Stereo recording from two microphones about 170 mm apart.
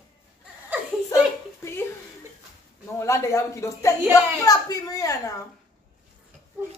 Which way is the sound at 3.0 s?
15° left (ahead or behind).